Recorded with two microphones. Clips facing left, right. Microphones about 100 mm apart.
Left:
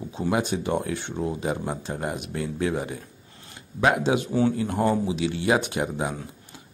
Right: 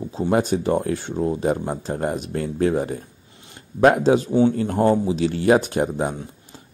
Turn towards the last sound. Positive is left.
turn(degrees=-40)  # may be behind; listen again after turning